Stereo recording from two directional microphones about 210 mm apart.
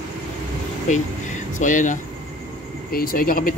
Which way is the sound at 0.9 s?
35° left (ahead or behind).